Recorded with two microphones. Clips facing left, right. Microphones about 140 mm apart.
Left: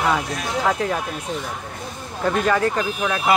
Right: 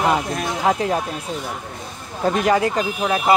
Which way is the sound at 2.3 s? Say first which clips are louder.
Right 2 dB; 15° right (ahead or behind).